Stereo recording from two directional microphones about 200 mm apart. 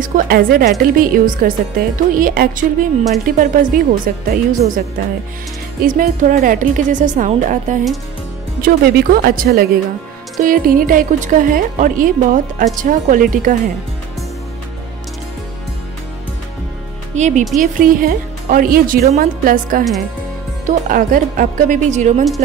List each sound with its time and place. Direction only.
0.0 s a woman's voice: 45° right (ahead or behind)
17.1 s a woman's voice: 35° right (ahead or behind)